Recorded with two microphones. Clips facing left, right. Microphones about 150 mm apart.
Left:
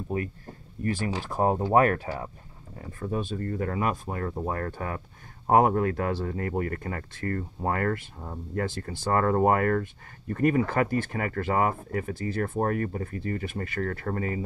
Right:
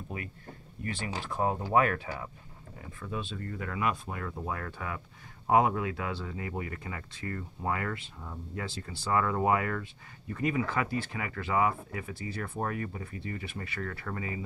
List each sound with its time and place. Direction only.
0.1 s speech: 40° left (ahead or behind)